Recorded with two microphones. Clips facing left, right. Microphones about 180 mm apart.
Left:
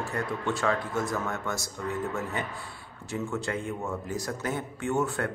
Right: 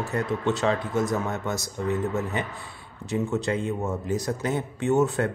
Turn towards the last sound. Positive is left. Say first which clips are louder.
# right 6 dB
turn(degrees=-20)  # may be behind; listen again after turning